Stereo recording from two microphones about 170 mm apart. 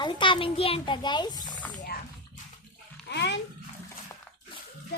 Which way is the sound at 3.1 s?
90° left.